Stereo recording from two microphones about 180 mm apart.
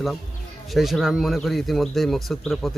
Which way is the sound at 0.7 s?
Centre (ahead or behind).